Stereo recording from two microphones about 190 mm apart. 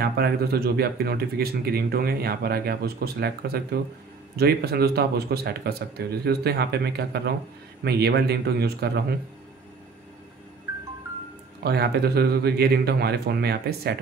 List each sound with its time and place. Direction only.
0.0 s speech: 55° right (ahead or behind)
11.6 s speech: 55° right (ahead or behind)